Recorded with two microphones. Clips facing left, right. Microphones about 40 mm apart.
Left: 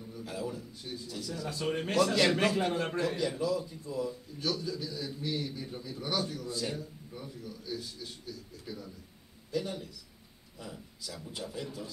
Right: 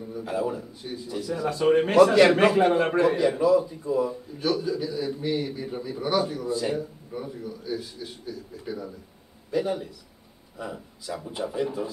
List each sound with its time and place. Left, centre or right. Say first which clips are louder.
0.1 s speech: right 10 dB; centre